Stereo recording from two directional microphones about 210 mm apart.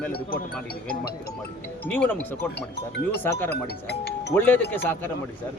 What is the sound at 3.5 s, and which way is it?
Speech, 50° left (ahead or behind).